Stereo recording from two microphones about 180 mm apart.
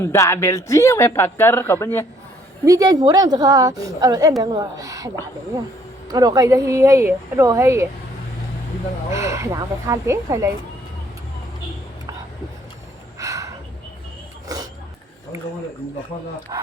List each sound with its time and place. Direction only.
0.0 s speech: 15° left (ahead or behind)
2.6 s a woman's voice: 20° right (ahead or behind)
9.1 s speech: 15° right (ahead or behind)
13.1 s a sound: 20° right (ahead or behind)
16.5 s a woman's voice: 20° right (ahead or behind)